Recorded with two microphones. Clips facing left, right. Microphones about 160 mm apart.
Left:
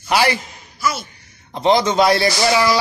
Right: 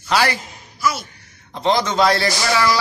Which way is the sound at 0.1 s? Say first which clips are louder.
Left 2 dB; 20° left (ahead or behind).